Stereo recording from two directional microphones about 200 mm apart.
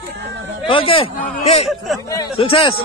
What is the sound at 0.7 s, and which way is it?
Speech, 25° left (ahead or behind).